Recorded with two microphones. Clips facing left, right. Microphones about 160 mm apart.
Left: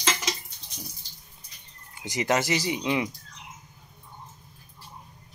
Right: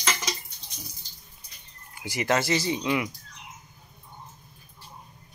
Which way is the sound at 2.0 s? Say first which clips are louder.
Even; 20° left (ahead or behind).